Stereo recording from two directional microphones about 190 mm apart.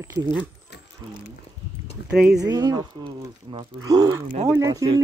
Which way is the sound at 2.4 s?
20° right (ahead or behind).